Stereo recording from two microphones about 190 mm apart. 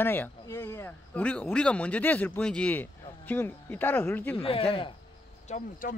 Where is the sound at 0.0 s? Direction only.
10° left (ahead or behind).